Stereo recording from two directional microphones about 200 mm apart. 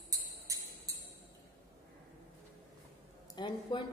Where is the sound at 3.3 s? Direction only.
20° left (ahead or behind).